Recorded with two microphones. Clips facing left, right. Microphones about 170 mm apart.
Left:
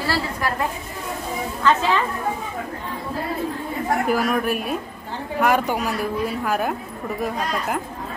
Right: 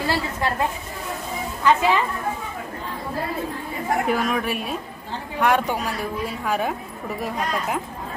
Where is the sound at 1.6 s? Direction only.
15° right (ahead or behind).